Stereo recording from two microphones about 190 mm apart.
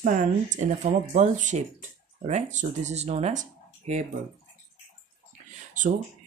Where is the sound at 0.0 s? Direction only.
45° right (ahead or behind).